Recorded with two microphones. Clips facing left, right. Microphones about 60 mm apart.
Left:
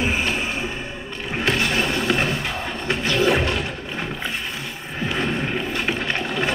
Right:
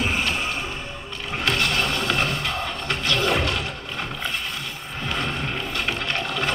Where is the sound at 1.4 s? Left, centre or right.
Centre.